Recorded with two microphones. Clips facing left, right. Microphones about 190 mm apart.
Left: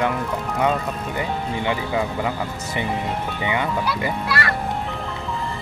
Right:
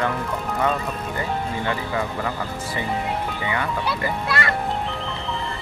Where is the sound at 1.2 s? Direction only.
15° left (ahead or behind).